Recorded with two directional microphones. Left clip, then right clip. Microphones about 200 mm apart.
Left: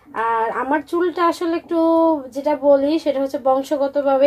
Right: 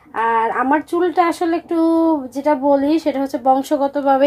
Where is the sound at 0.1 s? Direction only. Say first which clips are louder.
Right 3 dB; 30° right (ahead or behind).